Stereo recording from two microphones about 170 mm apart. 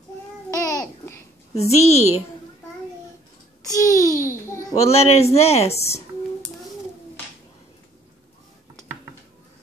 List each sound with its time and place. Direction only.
0.5 s babbling: 20° left (ahead or behind)
1.6 s speech: 40° left (ahead or behind)
3.7 s a child's voice: 20° left (ahead or behind)
4.7 s speech: 40° left (ahead or behind)